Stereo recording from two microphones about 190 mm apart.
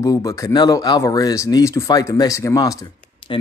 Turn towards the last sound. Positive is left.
turn(degrees=25)  # may be behind; listen again after turning